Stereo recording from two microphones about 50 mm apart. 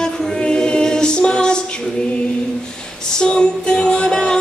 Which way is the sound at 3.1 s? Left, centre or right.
Centre.